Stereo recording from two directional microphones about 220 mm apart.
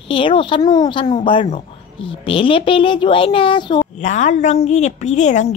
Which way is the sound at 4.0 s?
35° left (ahead or behind).